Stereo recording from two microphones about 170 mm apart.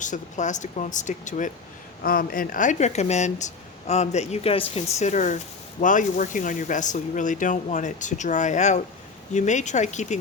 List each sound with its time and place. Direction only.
0.0 s speech: 45° left (ahead or behind)